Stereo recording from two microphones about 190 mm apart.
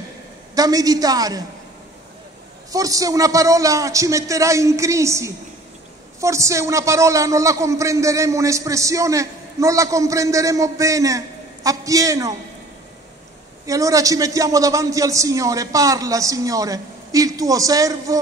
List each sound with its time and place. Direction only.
0.6 s a woman's voice: 20° right (ahead or behind)
2.7 s a man's voice: 20° right (ahead or behind)
13.7 s a man's voice: 15° right (ahead or behind)